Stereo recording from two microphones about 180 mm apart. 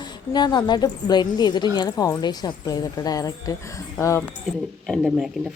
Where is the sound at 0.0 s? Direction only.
25° left (ahead or behind).